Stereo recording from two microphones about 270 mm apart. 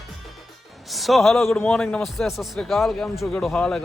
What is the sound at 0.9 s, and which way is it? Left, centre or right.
A man's voice, centre.